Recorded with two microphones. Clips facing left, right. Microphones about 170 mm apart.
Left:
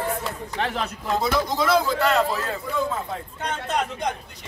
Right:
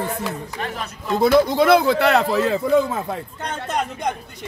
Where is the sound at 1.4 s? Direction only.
60° right (ahead or behind).